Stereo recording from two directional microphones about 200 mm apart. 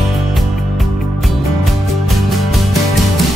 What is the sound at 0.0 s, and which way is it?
Music, centre (ahead or behind).